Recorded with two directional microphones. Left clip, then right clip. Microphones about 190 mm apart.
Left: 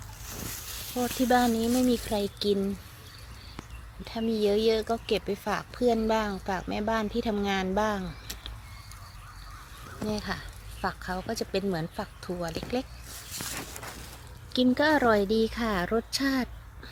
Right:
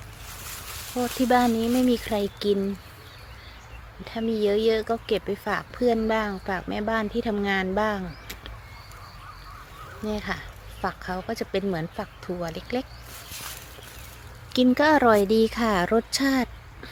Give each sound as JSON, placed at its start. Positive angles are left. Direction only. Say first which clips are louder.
{"t": 0.9, "sound": "speech", "louder": "right 3 dB", "side_deg": 0}
{"t": 4.0, "sound": "speech", "louder": "right 3 dB", "side_deg": 0}
{"t": 10.1, "sound": "speech", "louder": "right 3 dB", "side_deg": 0}
{"t": 14.5, "sound": "speech", "louder": "right 4 dB", "side_deg": -10}